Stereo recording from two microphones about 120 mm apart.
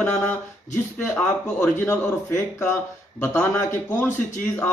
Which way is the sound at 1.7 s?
20° left (ahead or behind).